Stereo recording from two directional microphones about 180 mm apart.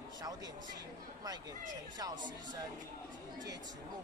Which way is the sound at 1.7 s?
20° right (ahead or behind).